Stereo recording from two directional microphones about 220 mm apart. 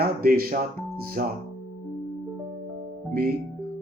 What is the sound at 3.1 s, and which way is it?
Music, 45° right (ahead or behind).